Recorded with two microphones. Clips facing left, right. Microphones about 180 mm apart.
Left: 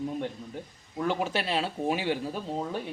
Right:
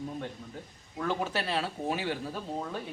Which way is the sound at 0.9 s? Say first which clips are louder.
Left 3 dB; 20° left (ahead or behind).